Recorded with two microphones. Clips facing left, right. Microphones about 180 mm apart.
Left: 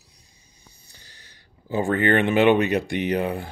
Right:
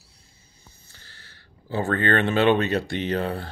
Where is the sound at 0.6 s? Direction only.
15° left (ahead or behind).